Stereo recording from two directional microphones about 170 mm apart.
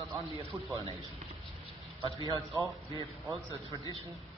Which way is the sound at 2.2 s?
25° right (ahead or behind).